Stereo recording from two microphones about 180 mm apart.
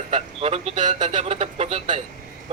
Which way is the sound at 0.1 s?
35° right (ahead or behind).